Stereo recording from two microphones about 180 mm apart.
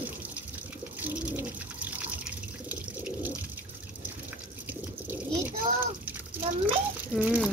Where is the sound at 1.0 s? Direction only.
10° right (ahead or behind).